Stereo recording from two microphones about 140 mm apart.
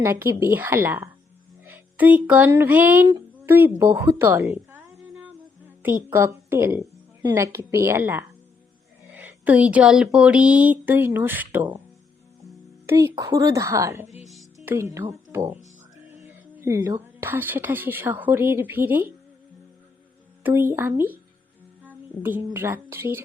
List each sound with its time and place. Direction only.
0.0 s speech: 20° right (ahead or behind)
5.8 s a woman's voice: 15° right (ahead or behind)
12.8 s a woman's voice: 20° right (ahead or behind)
16.2 s music: 20° right (ahead or behind)
17.2 s speech: 15° right (ahead or behind)
20.4 s speech: 15° right (ahead or behind)
21.8 s a sound: 15° right (ahead or behind)
22.5 s speech: 15° right (ahead or behind)